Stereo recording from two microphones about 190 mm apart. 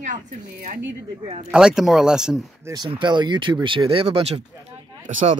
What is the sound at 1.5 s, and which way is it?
Speech, 5° right (ahead or behind).